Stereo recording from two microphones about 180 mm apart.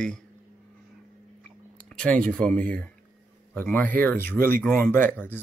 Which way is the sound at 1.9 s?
5° left (ahead or behind).